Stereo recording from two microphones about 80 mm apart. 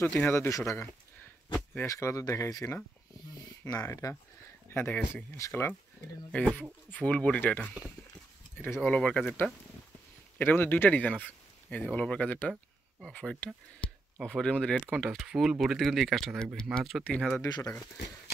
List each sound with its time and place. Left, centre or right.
0.3 s speech: left
1.5 s speech: centre
1.9 s speech: left
3.3 s a sound: left
4.0 s speech: left
4.6 s speech: left
6.3 s speech: centre
8.8 s speech: centre
13.8 s a sound: centre
14.2 s speech: centre
15.0 s speech: centre
17.5 s speech: left